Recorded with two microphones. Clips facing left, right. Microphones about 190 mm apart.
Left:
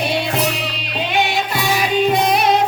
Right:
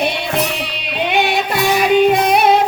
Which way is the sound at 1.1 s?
60° right (ahead or behind).